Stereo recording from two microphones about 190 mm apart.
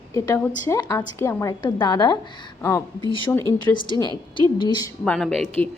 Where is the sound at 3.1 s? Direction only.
25° left (ahead or behind).